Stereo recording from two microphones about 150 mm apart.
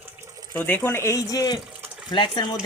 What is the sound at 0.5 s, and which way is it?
Speech, 10° left (ahead or behind).